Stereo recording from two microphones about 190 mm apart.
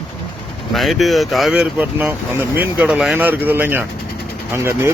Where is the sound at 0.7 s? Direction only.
Centre (ahead or behind).